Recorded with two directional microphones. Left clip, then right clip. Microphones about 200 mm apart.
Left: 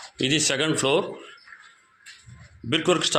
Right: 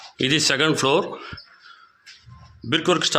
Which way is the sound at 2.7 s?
10° right (ahead or behind).